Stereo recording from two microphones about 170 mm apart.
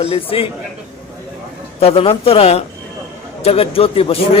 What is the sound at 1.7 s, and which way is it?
Speech, 35° left (ahead or behind).